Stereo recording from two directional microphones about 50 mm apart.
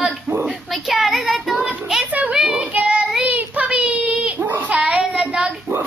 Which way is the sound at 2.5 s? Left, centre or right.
Right.